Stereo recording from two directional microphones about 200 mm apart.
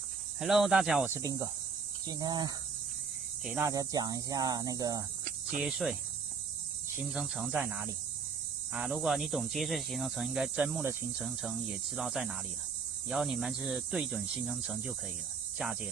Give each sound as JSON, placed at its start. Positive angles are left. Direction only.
{"t": 0.4, "sound": "cricket", "side_deg": 0}
{"t": 2.0, "sound": "speech", "side_deg": -20}
{"t": 5.6, "sound": "cricket", "side_deg": 0}
{"t": 7.0, "sound": "cricket", "side_deg": 0}